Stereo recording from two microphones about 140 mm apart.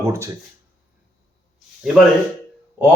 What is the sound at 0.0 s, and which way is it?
Speech, 20° right (ahead or behind).